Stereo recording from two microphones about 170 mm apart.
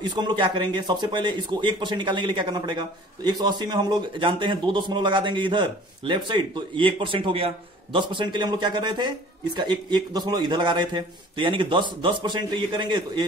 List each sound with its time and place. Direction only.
0.0 s a man's voice: 25° right (ahead or behind)